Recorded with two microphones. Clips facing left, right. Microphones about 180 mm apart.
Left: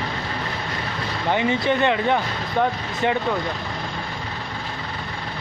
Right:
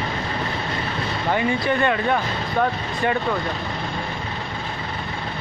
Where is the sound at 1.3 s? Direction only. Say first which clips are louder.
Left 1 dB; 20° left (ahead or behind).